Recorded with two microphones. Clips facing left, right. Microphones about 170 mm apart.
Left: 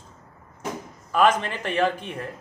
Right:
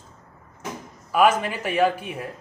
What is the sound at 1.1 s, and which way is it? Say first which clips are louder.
Speech: right 1 dB; 10° right (ahead or behind).